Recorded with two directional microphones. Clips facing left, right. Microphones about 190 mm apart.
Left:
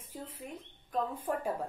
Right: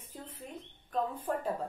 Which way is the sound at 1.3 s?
10° left (ahead or behind).